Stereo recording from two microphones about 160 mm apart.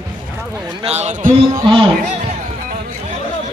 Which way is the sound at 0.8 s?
40° right (ahead or behind).